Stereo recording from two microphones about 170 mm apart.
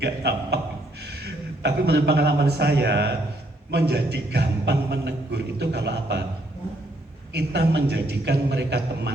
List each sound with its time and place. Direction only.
0.0 s a man's voice: 75° right (ahead or behind)
1.6 s a man's voice: 80° right
7.3 s a man's voice: 80° right